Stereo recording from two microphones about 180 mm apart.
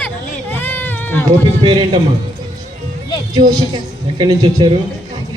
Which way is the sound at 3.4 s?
45° right (ahead or behind).